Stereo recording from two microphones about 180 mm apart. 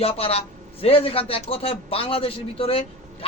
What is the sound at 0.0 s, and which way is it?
A man's voice, 35° left (ahead or behind).